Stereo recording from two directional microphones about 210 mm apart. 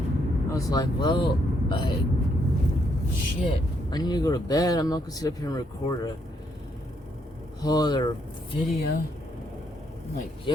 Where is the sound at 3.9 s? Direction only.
20° left (ahead or behind).